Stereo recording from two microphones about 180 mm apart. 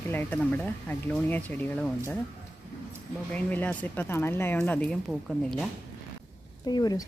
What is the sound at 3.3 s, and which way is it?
Speech, 10° left (ahead or behind).